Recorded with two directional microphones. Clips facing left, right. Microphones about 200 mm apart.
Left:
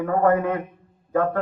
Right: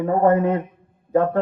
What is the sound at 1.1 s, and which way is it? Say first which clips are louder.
Mantra: right 3 dB; 25° right (ahead or behind).